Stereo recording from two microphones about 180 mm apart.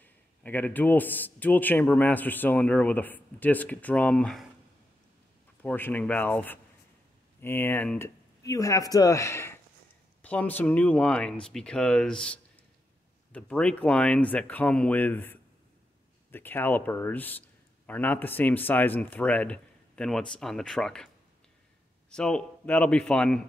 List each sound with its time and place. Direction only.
0.0 s a man's voice: 10° left (ahead or behind)
5.6 s a man's voice: 10° left (ahead or behind)
22.1 s speech: 5° left (ahead or behind)